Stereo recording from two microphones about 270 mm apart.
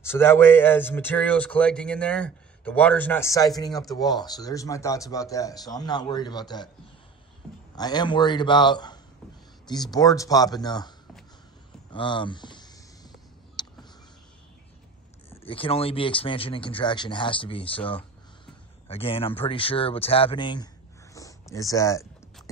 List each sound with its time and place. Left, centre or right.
0.0 s speech: centre
7.7 s speech: centre
11.9 s a sound: centre
15.4 s speech: centre